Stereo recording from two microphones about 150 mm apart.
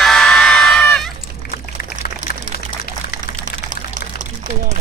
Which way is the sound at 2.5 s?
90° left.